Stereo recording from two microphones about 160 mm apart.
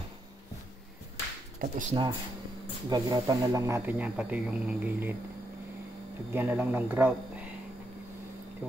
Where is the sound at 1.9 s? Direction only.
30° right (ahead or behind); by 5.1 s 10° right (ahead or behind).